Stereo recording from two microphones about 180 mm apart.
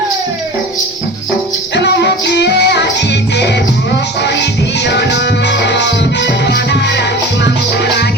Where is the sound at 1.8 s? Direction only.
70° left (ahead or behind).